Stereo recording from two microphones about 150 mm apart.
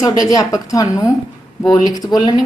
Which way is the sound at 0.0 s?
20° left (ahead or behind).